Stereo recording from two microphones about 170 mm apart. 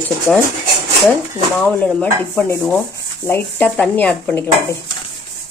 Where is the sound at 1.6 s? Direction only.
10° left (ahead or behind).